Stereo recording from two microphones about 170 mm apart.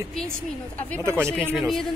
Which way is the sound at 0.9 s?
15° right (ahead or behind).